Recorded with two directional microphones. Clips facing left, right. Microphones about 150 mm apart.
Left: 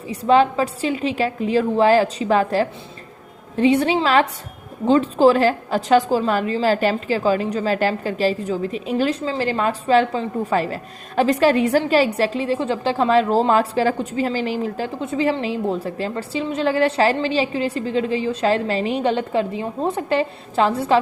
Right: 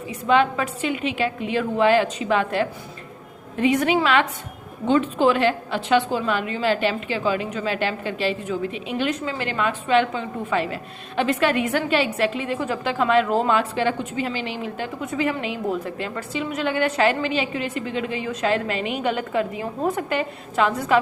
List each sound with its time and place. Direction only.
0.1 s a woman's voice: 35° left (ahead or behind)